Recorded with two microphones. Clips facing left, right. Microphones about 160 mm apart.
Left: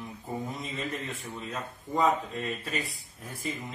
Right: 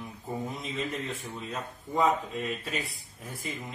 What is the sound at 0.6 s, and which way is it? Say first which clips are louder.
Speech: right 1 dB; centre (ahead or behind).